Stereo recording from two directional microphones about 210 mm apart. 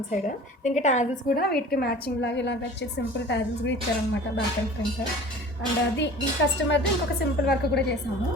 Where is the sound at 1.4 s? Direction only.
45° left (ahead or behind).